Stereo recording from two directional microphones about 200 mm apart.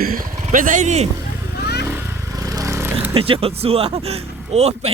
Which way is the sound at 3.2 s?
30° right (ahead or behind).